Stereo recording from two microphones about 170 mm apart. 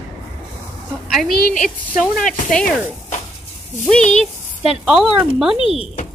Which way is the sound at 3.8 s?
5° left (ahead or behind).